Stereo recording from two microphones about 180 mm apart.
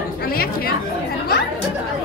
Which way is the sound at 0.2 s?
55° left (ahead or behind).